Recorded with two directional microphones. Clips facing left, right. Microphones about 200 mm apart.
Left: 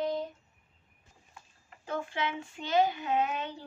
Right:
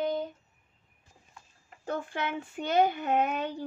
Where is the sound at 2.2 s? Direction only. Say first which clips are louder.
Right 2 dB; 55° right (ahead or behind).